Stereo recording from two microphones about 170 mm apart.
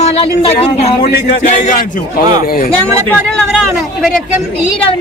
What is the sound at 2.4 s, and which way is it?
Speech, 60° left (ahead or behind).